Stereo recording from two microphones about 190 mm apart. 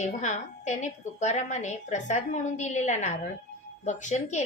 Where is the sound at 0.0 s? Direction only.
40° left (ahead or behind).